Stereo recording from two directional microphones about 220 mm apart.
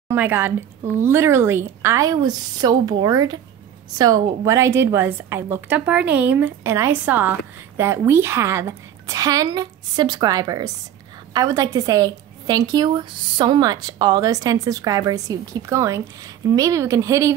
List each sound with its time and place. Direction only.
0.1 s a woman's voice: 10° right (ahead or behind)